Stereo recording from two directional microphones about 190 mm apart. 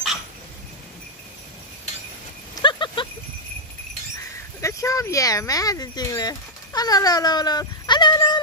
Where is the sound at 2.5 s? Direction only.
25° left (ahead or behind).